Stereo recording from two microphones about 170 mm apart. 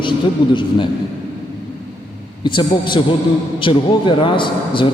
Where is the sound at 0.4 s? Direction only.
30° left (ahead or behind).